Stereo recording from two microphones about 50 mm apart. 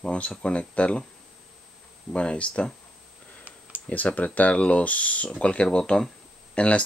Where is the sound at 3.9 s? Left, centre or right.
Left.